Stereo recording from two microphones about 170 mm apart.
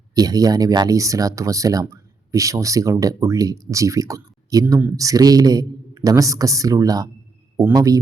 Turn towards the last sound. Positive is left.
turn(degrees=-20)  # may be behind; listen again after turning